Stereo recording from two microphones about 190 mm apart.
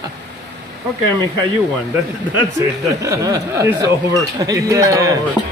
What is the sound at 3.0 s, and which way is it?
Speech, 15° right (ahead or behind).